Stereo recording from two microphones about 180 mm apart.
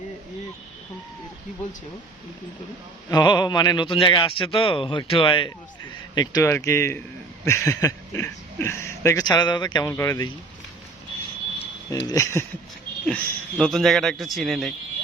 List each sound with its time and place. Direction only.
3.1 s a man's voice: 25° left (ahead or behind)
11.9 s a man's voice: 20° left (ahead or behind); by 14.7 s centre (ahead or behind)